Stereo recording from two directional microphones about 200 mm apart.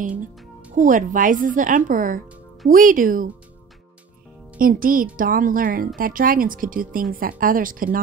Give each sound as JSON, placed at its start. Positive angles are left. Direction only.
{"t": 0.1, "sound": "music", "side_deg": -5}
{"t": 0.7, "sound": "a woman's voice", "side_deg": -40}
{"t": 4.6, "sound": "a woman's voice", "side_deg": -45}